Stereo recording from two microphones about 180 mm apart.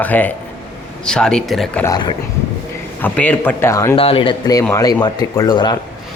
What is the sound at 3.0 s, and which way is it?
Speech, 10° left (ahead or behind).